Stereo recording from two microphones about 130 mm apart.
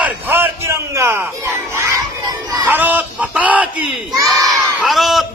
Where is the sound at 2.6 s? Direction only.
15° right (ahead or behind).